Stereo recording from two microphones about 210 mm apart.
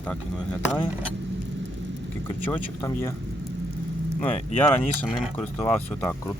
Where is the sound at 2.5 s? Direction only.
10° left (ahead or behind).